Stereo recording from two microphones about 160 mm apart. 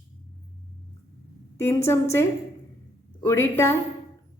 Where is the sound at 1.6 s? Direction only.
15° left (ahead or behind).